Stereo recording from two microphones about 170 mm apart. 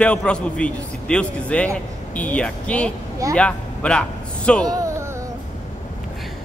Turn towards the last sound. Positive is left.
turn(degrees=-20)  # may be behind; listen again after turning